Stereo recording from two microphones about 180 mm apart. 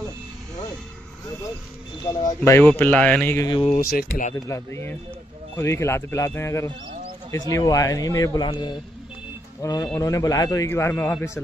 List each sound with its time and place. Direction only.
2.1 s a man's voice: 20° left (ahead or behind)
3.4 s speech: 25° left (ahead or behind)
3.9 s speech: 45° left (ahead or behind)
4.5 s a man's voice: 15° left (ahead or behind)